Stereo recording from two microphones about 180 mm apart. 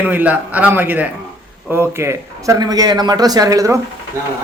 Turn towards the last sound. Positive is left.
turn(degrees=-15)  # may be behind; listen again after turning